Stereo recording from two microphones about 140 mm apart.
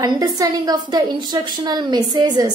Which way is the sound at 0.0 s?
30° right (ahead or behind).